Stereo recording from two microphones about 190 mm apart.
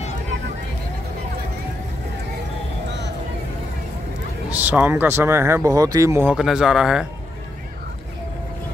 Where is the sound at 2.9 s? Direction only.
65° right (ahead or behind).